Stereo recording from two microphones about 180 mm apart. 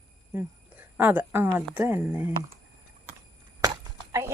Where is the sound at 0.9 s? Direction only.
10° right (ahead or behind).